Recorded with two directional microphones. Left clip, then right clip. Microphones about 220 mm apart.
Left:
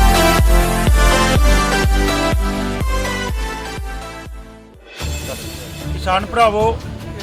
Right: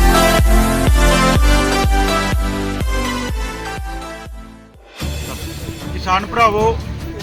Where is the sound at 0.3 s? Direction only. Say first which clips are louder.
Right 1 dB; centre (ahead or behind).